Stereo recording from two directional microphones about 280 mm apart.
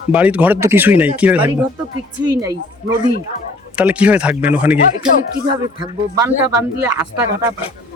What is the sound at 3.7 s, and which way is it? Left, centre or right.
A man's voice, centre.